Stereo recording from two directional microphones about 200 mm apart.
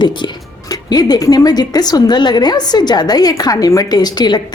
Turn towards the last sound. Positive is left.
turn(degrees=20)  # may be behind; listen again after turning